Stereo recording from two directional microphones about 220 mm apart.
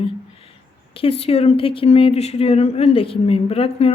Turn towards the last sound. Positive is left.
turn(degrees=25)  # may be behind; listen again after turning